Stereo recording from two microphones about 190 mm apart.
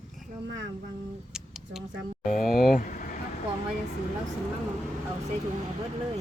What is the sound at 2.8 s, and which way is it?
Vehicle, 45° left (ahead or behind).